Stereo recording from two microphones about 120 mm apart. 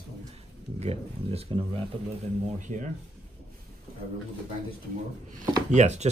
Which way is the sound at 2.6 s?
90° right.